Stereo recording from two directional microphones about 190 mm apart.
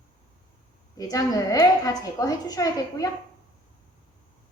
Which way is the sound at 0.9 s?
20° left (ahead or behind).